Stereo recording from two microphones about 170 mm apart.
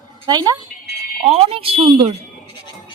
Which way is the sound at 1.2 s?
35° right (ahead or behind).